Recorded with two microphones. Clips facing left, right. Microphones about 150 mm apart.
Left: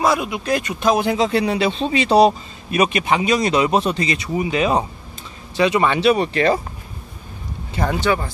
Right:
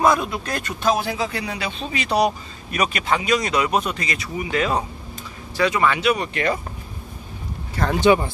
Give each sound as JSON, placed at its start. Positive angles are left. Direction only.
{"t": 0.1, "sound": "speech", "side_deg": 10}
{"t": 1.3, "sound": "a man's voice", "side_deg": 30}
{"t": 8.0, "sound": "speech", "side_deg": -20}